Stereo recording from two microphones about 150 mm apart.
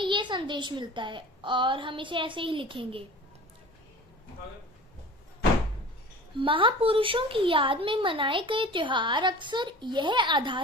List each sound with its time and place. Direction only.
0.0 s a woman's voice: 30° right (ahead or behind)
6.4 s a woman's voice: 35° right (ahead or behind)